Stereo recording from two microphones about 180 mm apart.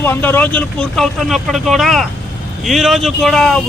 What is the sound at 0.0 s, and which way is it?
Speech, 10° left (ahead or behind).